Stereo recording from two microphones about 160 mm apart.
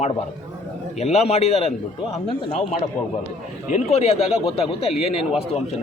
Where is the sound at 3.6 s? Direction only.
45° left (ahead or behind).